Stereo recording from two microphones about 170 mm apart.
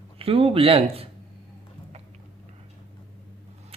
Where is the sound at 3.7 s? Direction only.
35° right (ahead or behind).